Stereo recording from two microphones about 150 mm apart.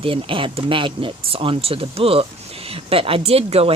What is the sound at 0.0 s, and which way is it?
Speech, 35° right (ahead or behind).